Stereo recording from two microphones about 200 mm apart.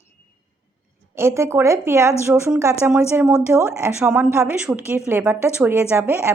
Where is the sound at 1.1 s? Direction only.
15° right (ahead or behind).